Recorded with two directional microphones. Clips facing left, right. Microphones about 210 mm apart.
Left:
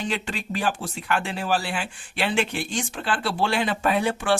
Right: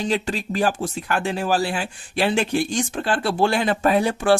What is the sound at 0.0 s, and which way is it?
Speech, 40° right (ahead or behind).